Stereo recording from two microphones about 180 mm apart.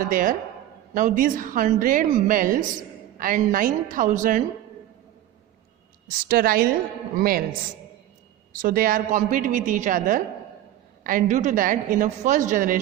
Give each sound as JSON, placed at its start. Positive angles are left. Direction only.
{"t": 0.1, "sound": "a woman's voice", "side_deg": -45}
{"t": 6.1, "sound": "a woman's voice", "side_deg": -55}
{"t": 8.5, "sound": "a woman's voice", "side_deg": -50}